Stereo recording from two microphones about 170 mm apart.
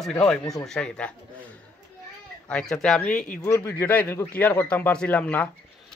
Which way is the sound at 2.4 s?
5° left (ahead or behind).